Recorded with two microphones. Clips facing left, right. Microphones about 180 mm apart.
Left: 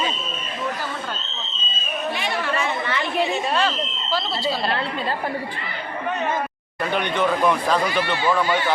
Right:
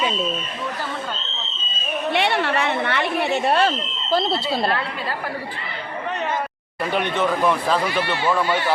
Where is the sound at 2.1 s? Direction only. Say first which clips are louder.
Right 7 dB; 65° right (ahead or behind).